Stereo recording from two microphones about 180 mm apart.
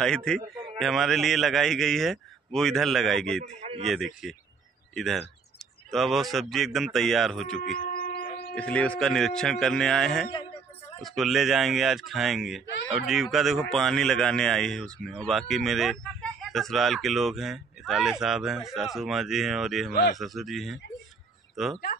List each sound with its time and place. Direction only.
0.0 s speech: 5° left (ahead or behind)
7.7 s a sound: 50° left (ahead or behind)
8.5 s speech: 5° left (ahead or behind)
19.9 s speech: 60° left (ahead or behind)
20.2 s speech: centre (ahead or behind)